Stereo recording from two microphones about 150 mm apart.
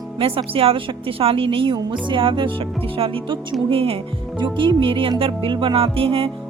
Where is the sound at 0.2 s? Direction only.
40° right (ahead or behind).